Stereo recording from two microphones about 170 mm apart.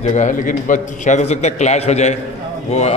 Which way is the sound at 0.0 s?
45° left (ahead or behind).